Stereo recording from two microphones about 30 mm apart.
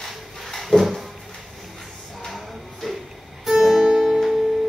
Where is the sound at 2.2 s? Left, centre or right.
Centre.